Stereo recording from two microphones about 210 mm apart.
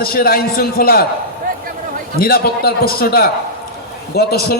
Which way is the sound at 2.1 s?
45° left (ahead or behind).